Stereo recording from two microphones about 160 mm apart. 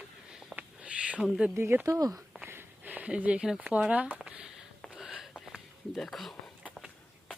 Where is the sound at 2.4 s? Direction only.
10° right (ahead or behind).